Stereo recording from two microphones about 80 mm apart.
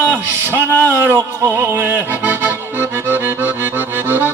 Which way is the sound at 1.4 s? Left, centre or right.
Right.